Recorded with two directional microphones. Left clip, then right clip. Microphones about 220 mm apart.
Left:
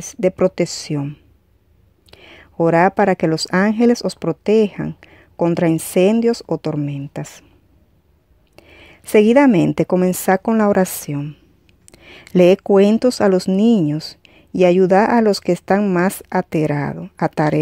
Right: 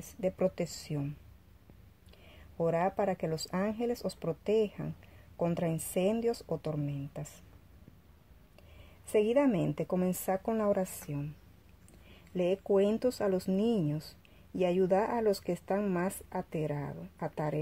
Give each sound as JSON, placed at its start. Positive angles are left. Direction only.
{"t": 0.1, "sound": "speech", "side_deg": 40}
{"t": 8.5, "sound": "speech", "side_deg": 40}